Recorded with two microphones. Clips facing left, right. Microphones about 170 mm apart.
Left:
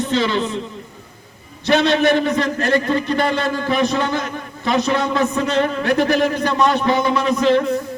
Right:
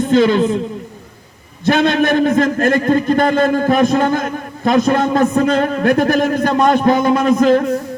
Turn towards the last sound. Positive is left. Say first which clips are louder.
# right 4 dB
turn(degrees=-45)  # may be behind; listen again after turning